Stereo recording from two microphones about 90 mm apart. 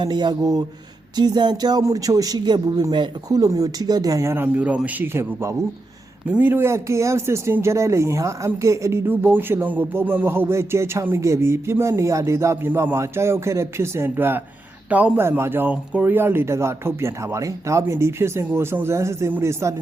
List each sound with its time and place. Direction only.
0.0 s a man's voice: 55° right (ahead or behind); by 4.4 s 30° right (ahead or behind)
4.5 s speech: 15° right (ahead or behind); by 9.0 s 35° right (ahead or behind)
9.0 s speech: 25° right (ahead or behind)